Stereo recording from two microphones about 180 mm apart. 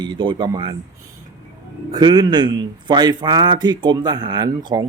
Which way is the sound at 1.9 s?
25° right (ahead or behind).